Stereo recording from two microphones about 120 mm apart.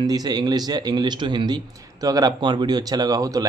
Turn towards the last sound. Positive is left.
turn(degrees=-30)  # may be behind; listen again after turning